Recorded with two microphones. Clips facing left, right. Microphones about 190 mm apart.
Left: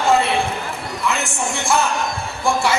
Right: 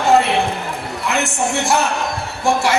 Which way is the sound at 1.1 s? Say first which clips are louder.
Right 5 dB; 65° right (ahead or behind).